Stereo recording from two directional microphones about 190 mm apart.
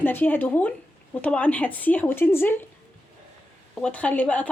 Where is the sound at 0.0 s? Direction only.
10° left (ahead or behind).